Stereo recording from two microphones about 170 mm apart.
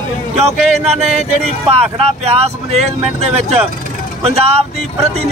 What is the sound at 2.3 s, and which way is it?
Speech, 40° right (ahead or behind).